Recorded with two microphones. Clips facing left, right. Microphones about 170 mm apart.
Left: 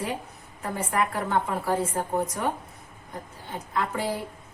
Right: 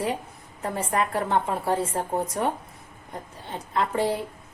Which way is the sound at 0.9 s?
30° right (ahead or behind).